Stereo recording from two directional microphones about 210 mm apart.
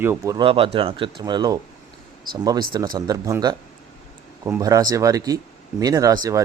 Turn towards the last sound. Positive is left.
turn(degrees=-15)  # may be behind; listen again after turning